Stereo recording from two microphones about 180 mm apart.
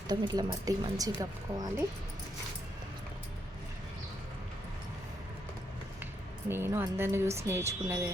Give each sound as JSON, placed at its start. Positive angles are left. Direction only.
{"t": 0.1, "sound": "speech", "side_deg": -20}
{"t": 6.5, "sound": "speech", "side_deg": -10}